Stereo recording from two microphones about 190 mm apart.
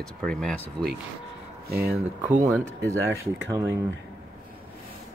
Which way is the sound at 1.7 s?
55° right (ahead or behind).